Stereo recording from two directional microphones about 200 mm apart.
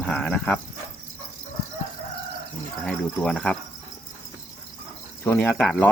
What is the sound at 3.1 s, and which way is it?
Cricket, 5° left (ahead or behind).